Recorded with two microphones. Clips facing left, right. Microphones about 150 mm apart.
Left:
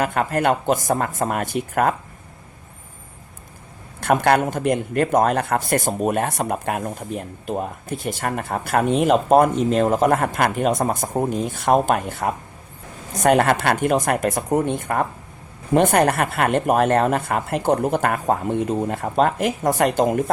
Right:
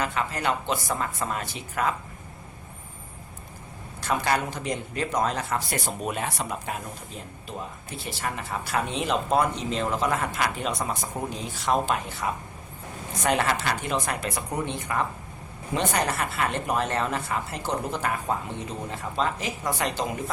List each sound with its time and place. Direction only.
0.0 s speech: 50° left (ahead or behind)
4.0 s speech: 60° left (ahead or behind)